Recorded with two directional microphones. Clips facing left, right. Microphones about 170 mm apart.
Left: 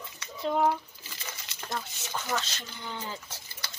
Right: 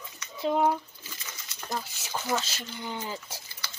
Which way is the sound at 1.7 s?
10° right (ahead or behind).